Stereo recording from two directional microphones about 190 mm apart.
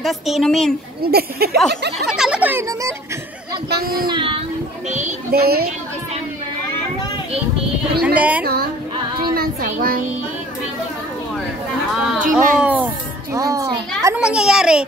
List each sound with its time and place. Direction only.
0.0 s speech: centre (ahead or behind)
1.0 s speech: 55° right (ahead or behind)
2.0 s speech: 5° right (ahead or behind)
3.7 s a child's voice: 55° right (ahead or behind)
4.1 s speech: 25° right (ahead or behind)
5.3 s speech: 55° right (ahead or behind)
8.0 s speech: 5° right (ahead or behind)
9.3 s a woman's voice: 50° right (ahead or behind)
12.2 s a child's voice: 45° right (ahead or behind)
12.5 s a child's voice: 5° right (ahead or behind)
14.2 s speech: 5° right (ahead or behind)